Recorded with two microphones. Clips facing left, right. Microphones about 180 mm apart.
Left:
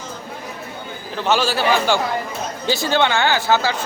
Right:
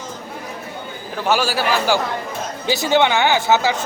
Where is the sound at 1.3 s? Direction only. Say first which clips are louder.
Left 1 dB; 10° right (ahead or behind).